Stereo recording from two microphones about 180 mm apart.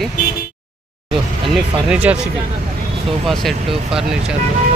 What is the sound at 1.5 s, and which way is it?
Speech, 5° right (ahead or behind).